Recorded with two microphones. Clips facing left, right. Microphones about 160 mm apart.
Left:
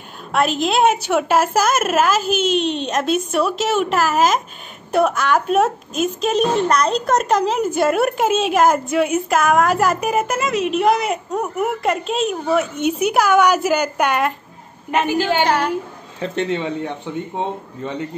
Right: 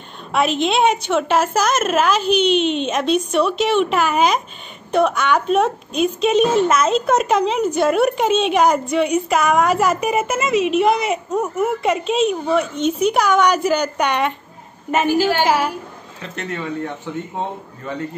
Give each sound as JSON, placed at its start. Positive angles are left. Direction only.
{"t": 0.3, "sound": "a woman's voice", "side_deg": 0}
{"t": 15.4, "sound": "a woman's voice", "side_deg": -5}
{"t": 16.3, "sound": "speech", "side_deg": 25}